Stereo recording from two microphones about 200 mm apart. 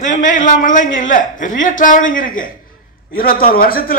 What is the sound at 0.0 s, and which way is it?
A man's voice, 40° left (ahead or behind).